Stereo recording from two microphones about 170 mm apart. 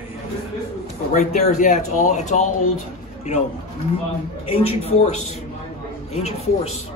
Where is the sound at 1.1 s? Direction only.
45° left (ahead or behind).